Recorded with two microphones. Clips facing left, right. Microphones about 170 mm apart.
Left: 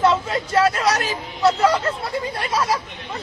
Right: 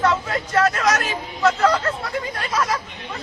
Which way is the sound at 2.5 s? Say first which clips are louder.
Left 1 dB; 30° left (ahead or behind).